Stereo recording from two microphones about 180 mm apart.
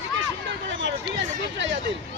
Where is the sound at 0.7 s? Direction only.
90° right.